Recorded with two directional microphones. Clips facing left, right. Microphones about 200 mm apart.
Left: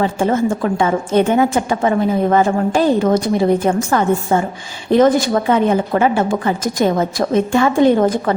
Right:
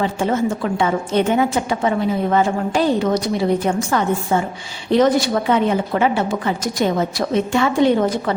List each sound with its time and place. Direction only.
0.0 s a woman's voice: 50° left (ahead or behind)